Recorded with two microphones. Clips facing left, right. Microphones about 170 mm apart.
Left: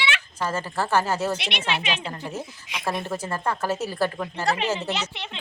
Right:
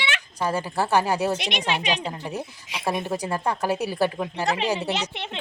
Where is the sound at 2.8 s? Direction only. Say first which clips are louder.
Right 2 dB; 15° right (ahead or behind).